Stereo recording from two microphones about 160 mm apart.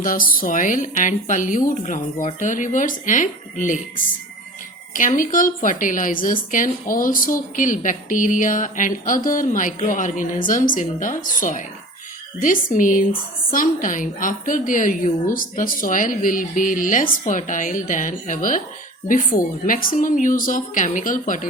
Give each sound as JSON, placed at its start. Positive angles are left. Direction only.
{"t": 0.0, "sound": "speech", "side_deg": 60}
{"t": 4.9, "sound": "speech", "side_deg": 55}